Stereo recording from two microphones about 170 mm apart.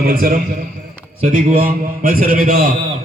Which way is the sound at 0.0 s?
60° right (ahead or behind).